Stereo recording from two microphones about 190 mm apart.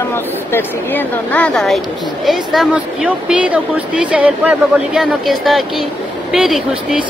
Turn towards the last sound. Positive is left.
turn(degrees=0)  # may be behind; listen again after turning